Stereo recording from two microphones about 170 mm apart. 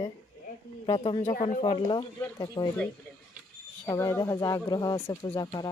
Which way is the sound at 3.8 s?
20° left (ahead or behind).